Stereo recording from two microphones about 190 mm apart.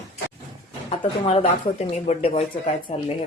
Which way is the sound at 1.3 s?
35° left (ahead or behind).